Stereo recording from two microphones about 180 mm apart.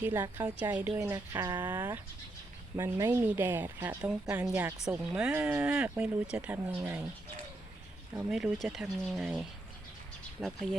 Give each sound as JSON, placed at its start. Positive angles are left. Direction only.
{"t": 0.0, "sound": "a woman's voice", "side_deg": -15}
{"t": 8.1, "sound": "a woman's voice", "side_deg": -5}